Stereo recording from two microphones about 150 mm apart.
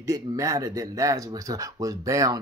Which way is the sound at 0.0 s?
20° right (ahead or behind).